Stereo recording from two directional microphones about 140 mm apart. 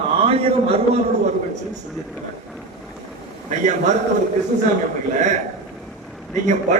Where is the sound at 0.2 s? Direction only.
45° right (ahead or behind).